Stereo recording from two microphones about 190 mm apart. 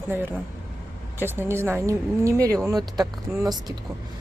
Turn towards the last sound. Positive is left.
turn(degrees=-20)  # may be behind; listen again after turning